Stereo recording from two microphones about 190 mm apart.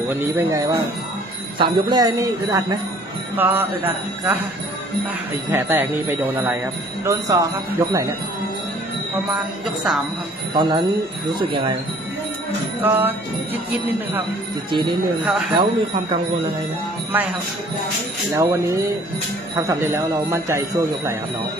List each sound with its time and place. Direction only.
0.0 s speech: 10° right (ahead or behind)
10.5 s speech: 25° right (ahead or behind)
12.8 s speech: 10° right (ahead or behind)
14.7 s speech: 25° right (ahead or behind)
18.3 s speech: 15° right (ahead or behind)